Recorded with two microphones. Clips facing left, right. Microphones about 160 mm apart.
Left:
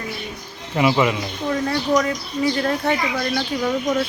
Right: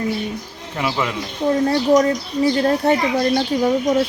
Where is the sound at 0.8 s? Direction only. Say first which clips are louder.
Left 5 dB; 10° left (ahead or behind).